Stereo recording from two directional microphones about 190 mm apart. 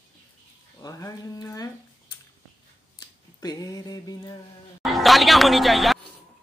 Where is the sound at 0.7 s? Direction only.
20° left (ahead or behind).